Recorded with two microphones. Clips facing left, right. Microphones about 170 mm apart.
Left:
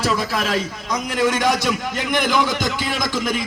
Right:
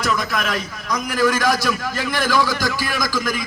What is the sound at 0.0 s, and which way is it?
A man's voice, 30° left (ahead or behind).